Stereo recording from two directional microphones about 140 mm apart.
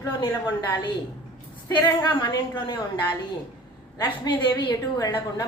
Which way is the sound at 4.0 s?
35° left (ahead or behind).